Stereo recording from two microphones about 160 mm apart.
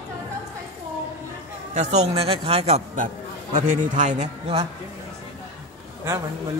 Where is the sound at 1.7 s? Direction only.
40° right (ahead or behind).